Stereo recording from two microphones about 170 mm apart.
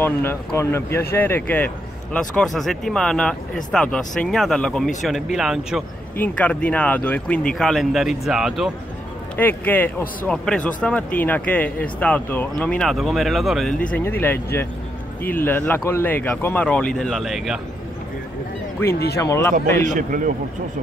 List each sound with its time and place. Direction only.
0.0 s speech: 15° left (ahead or behind); by 5.9 s 5° right (ahead or behind)
6.1 s speech: 10° left (ahead or behind)
9.4 s speech: 10° left (ahead or behind)
18.8 s speech: 15° left (ahead or behind)
19.8 s a man's voice: 50° right (ahead or behind)